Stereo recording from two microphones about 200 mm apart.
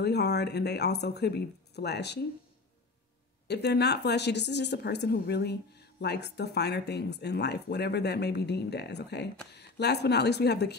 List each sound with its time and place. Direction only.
0.0 s a woman's voice: 55° left (ahead or behind)
3.4 s a woman's voice: 55° left (ahead or behind)